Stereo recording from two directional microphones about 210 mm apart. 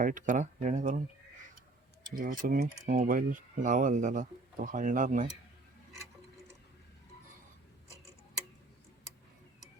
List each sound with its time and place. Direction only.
0.0 s speech: 40° right (ahead or behind)
2.1 s speech: 40° right (ahead or behind)